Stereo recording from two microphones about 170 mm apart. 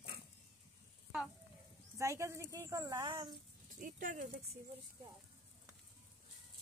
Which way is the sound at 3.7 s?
50° right (ahead or behind).